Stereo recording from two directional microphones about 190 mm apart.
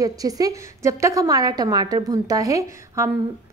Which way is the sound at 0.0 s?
20° right (ahead or behind).